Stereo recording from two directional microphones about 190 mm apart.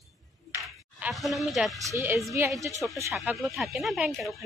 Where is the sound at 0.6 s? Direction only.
Centre (ahead or behind).